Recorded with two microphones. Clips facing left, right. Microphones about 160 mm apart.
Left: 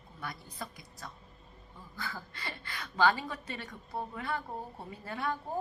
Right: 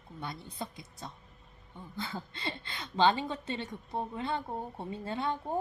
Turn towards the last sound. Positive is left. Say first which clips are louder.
# right 2 dB
turn(degrees=-25)  # may be behind; listen again after turning